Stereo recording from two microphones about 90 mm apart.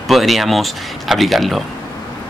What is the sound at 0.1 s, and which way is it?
Speech, centre (ahead or behind).